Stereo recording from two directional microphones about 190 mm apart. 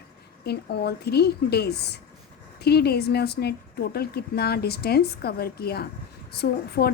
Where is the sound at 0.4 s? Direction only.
60° left (ahead or behind).